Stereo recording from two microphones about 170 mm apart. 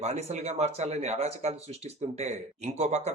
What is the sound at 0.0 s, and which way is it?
A man's voice, 40° right (ahead or behind).